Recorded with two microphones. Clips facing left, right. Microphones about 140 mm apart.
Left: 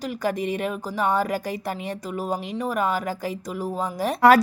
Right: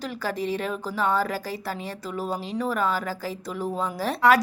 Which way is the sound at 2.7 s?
15° left (ahead or behind).